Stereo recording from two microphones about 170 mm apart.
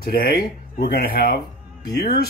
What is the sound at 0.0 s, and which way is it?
Speech, 60° left (ahead or behind).